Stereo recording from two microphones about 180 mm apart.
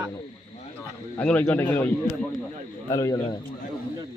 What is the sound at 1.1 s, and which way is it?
Speech, 10° left (ahead or behind).